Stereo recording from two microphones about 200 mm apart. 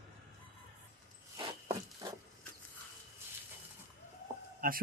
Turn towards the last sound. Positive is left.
turn(degrees=-45)  # may be behind; listen again after turning